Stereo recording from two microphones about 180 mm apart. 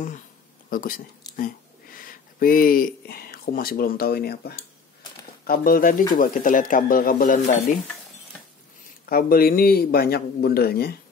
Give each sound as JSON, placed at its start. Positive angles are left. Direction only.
{"t": 0.7, "sound": "speech", "side_deg": 50}
{"t": 9.1, "sound": "speech", "side_deg": 55}